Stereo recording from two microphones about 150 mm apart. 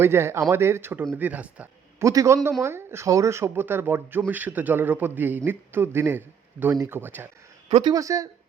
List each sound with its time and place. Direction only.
0.0 s speech: 15° right (ahead or behind)